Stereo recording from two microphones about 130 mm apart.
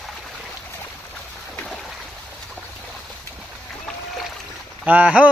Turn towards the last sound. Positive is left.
turn(degrees=-10)  # may be behind; listen again after turning